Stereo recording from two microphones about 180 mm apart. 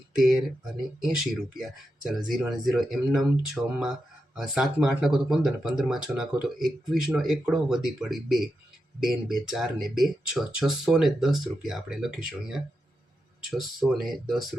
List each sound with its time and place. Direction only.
0.2 s speech: centre (ahead or behind)